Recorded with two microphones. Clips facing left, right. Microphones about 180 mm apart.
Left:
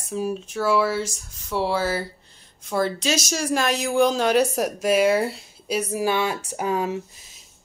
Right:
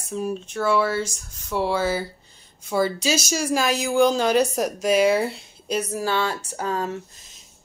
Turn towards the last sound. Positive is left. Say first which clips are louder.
# left 2 dB
turn(degrees=10)  # may be behind; listen again after turning